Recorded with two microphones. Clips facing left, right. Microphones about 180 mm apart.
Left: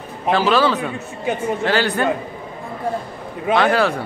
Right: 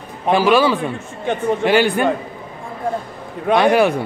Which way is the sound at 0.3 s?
15° right (ahead or behind).